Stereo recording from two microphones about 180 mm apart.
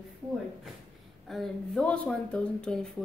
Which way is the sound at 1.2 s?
Centre (ahead or behind).